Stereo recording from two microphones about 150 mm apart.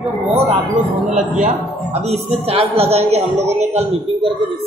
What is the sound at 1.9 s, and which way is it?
A woman's voice, 45° right (ahead or behind).